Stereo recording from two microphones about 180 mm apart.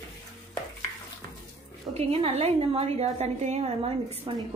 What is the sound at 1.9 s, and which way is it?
A woman's voice, 35° right (ahead or behind).